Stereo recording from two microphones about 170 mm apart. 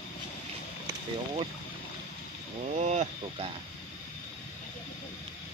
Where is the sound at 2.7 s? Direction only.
45° right (ahead or behind).